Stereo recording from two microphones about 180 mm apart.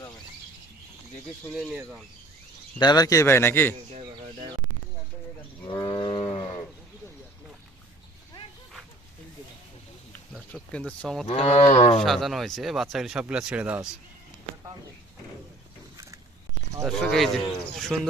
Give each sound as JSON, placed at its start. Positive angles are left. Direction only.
{"t": 1.5, "sound": "speech", "side_deg": -5}
{"t": 2.7, "sound": "a man's voice", "side_deg": 20}
{"t": 5.6, "sound": "cattle", "side_deg": 25}
{"t": 10.5, "sound": "a man's voice", "side_deg": 5}
{"t": 11.4, "sound": "cattle", "side_deg": 40}
{"t": 12.0, "sound": "speech", "side_deg": 0}
{"t": 16.8, "sound": "speech", "side_deg": 5}